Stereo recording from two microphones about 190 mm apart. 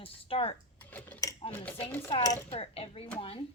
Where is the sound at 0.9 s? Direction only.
10° left (ahead or behind).